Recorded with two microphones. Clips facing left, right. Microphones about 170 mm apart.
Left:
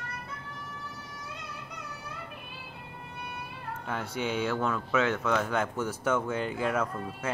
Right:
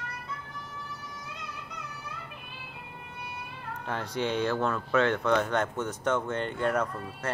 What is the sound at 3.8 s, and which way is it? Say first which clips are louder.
Speech: right 2 dB; 5° left (ahead or behind).